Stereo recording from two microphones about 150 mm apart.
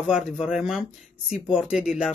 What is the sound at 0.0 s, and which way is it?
Speech, 5° right (ahead or behind).